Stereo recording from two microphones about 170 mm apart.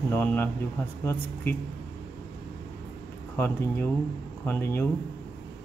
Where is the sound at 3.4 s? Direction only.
15° left (ahead or behind).